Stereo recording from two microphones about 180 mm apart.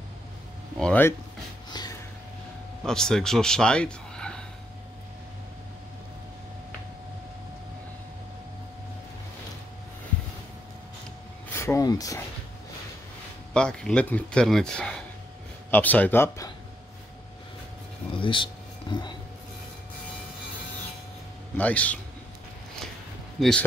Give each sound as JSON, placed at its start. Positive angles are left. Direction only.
{"t": 0.7, "sound": "speech", "side_deg": 5}
{"t": 1.7, "sound": "snort", "side_deg": 25}
{"t": 2.8, "sound": "speech", "side_deg": 5}
{"t": 11.5, "sound": "a sound", "side_deg": 15}
{"t": 13.5, "sound": "speech", "side_deg": 5}
{"t": 18.2, "sound": "a sound", "side_deg": 25}
{"t": 21.5, "sound": "speech", "side_deg": 10}
{"t": 23.4, "sound": "speech", "side_deg": 0}